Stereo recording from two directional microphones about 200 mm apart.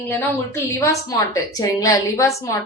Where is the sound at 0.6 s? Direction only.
15° left (ahead or behind).